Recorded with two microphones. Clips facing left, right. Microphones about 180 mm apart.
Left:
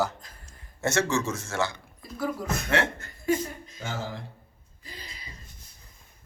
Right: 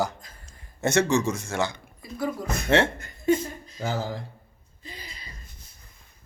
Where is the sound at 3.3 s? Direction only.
25° right (ahead or behind).